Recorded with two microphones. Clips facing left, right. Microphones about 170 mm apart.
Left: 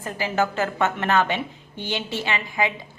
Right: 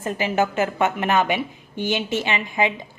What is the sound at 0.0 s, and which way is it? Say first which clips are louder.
A woman's voice: right 2 dB; 20° right (ahead or behind).